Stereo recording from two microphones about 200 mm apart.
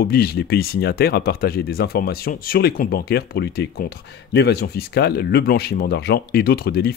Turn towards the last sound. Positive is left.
turn(degrees=50)  # may be behind; listen again after turning